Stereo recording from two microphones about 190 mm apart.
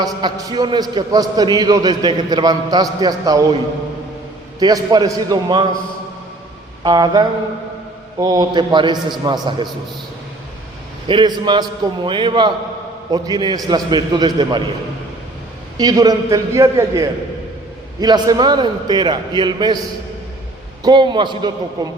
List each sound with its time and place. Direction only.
0.0 s a man's voice: 25° right (ahead or behind)
4.6 s a man's voice: 20° right (ahead or behind)
6.8 s a man's voice: 20° right (ahead or behind)
11.1 s a man's voice: 25° right (ahead or behind)
15.8 s a man's voice: 20° right (ahead or behind)
20.8 s a man's voice: 25° right (ahead or behind)